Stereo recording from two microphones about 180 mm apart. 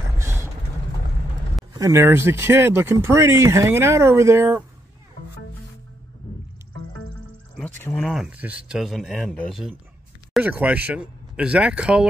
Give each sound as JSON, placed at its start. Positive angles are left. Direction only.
{"t": 0.2, "sound": "vehicle", "side_deg": -15}
{"t": 1.7, "sound": "speech", "side_deg": -15}
{"t": 7.8, "sound": "speech", "side_deg": 5}